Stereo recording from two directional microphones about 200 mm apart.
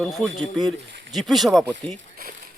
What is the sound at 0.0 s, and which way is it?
Speech, centre (ahead or behind).